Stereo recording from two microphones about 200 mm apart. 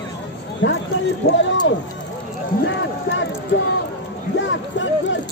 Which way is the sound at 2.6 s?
70° left (ahead or behind).